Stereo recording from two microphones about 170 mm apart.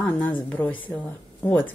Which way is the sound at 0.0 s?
10° left (ahead or behind).